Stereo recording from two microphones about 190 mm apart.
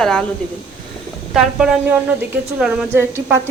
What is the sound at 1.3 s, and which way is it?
Speech, centre (ahead or behind).